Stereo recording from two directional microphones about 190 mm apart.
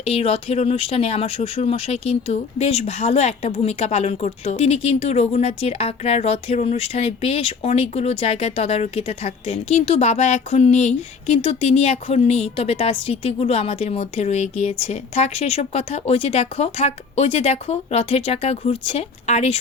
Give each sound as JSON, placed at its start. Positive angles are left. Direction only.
{"t": 0.0, "sound": "speech", "side_deg": 30}